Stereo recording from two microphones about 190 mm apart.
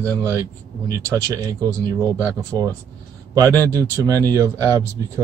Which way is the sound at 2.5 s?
20° right (ahead or behind).